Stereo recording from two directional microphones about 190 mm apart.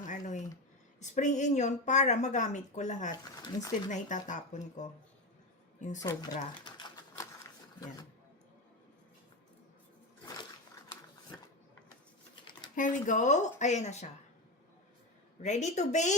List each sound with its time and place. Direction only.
0.0 s a sound: 40° left (ahead or behind)
0.9 s a woman's voice: 40° left (ahead or behind)
3.4 s speech: 20° left (ahead or behind)
3.8 s a woman's voice: 40° left (ahead or behind)
6.0 s speech: 20° left (ahead or behind)
12.7 s a woman's voice: 45° left (ahead or behind)
15.4 s a woman's voice: 40° left (ahead or behind)